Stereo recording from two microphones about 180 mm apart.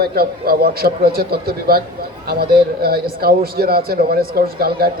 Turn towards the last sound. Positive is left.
turn(degrees=-55)  # may be behind; listen again after turning